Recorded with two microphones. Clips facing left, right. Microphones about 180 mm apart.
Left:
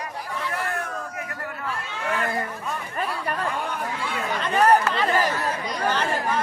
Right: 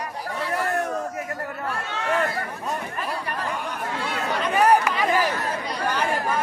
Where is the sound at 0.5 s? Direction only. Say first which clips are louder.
Right 7 dB; 40° right (ahead or behind).